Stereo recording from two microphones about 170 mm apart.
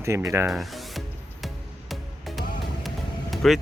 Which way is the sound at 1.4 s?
Centre (ahead or behind).